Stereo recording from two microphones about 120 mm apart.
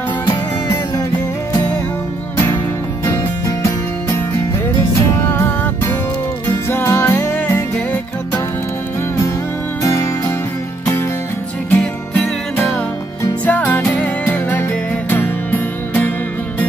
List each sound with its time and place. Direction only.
0.3 s music: 35° left (ahead or behind)
3.1 s music: 25° left (ahead or behind)
6.7 s music: 20° left (ahead or behind)
7.3 s music: 15° left (ahead or behind)
9.8 s music: 25° left (ahead or behind)
11.7 s music: 10° left (ahead or behind)